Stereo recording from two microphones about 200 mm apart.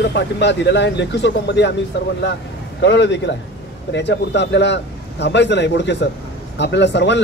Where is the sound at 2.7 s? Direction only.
60° left (ahead or behind).